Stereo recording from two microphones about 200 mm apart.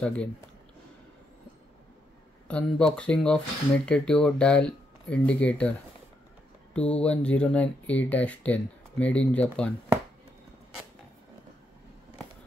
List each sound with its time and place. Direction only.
0.0 s speech: 5° left (ahead or behind)
2.4 s speech: 5° left (ahead or behind)